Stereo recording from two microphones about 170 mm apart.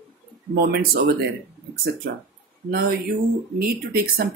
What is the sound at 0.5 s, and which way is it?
Speech, 65° right (ahead or behind).